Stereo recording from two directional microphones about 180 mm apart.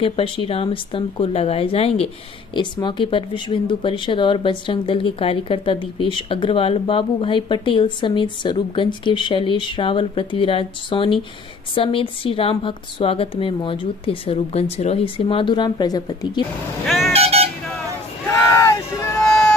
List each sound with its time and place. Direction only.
0.0 s speech: 30° left (ahead or behind)
16.8 s speech: centre (ahead or behind)
17.1 s speech: 35° right (ahead or behind)
18.5 s hubbub: 15° left (ahead or behind)